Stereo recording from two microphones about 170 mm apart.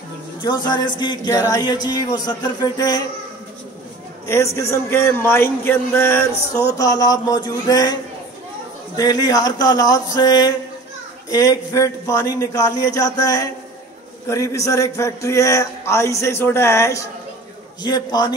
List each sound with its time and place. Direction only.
0.4 s a man's voice: 25° left (ahead or behind)
4.3 s a man's voice: 15° left (ahead or behind)